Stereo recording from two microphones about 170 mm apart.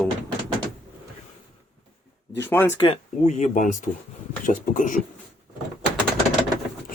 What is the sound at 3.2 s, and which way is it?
Speech, 45° left (ahead or behind).